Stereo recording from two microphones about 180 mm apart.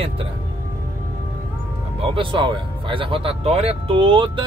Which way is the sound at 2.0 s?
30° right (ahead or behind).